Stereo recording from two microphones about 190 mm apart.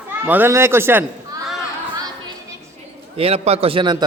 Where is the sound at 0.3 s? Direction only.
10° right (ahead or behind).